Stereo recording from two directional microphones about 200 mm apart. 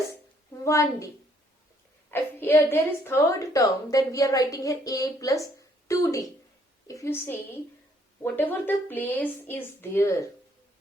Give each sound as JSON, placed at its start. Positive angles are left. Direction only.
{"t": 0.6, "sound": "a woman's voice", "side_deg": 15}